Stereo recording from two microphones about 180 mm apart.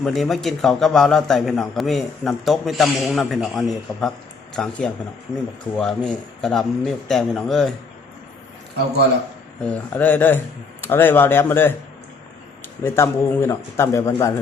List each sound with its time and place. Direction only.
0.0 s a man's voice: centre (ahead or behind)
9.6 s speech: 10° left (ahead or behind)
12.8 s speech: 15° left (ahead or behind)